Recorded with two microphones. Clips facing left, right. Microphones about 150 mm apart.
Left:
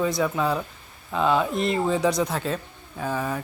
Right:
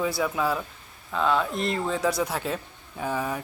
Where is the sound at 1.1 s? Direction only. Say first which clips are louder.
Left 3 dB; 10° left (ahead or behind).